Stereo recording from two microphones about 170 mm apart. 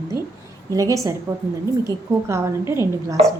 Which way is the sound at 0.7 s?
20° right (ahead or behind).